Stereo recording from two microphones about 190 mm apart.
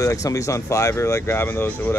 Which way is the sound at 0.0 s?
15° left (ahead or behind).